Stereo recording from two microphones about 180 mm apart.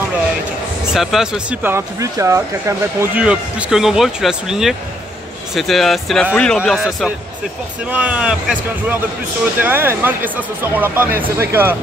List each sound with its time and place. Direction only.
0.9 s speech: 5° right (ahead or behind)